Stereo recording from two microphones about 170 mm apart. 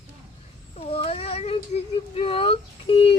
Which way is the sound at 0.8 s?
35° left (ahead or behind).